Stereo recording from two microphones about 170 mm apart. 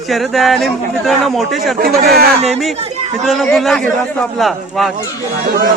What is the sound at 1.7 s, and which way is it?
Speech, 60° right (ahead or behind).